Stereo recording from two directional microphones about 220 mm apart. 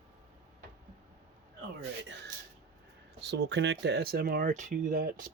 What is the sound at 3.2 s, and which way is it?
Speech, 50° right (ahead or behind).